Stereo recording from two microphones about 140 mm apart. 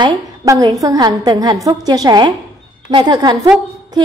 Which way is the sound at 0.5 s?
25° right (ahead or behind).